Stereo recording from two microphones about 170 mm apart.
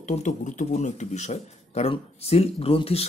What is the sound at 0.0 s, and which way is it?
Speech, 45° left (ahead or behind).